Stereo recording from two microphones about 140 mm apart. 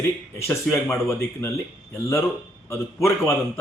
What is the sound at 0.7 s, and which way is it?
Speech, 5° left (ahead or behind).